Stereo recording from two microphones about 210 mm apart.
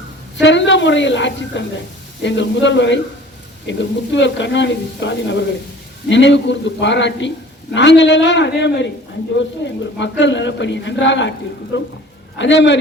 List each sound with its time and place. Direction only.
0.3 s a woman's voice: 60° left (ahead or behind)
10.0 s a woman's voice: 60° left (ahead or behind)